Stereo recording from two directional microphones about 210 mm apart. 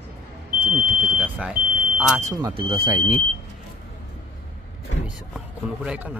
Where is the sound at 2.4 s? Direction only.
25° right (ahead or behind).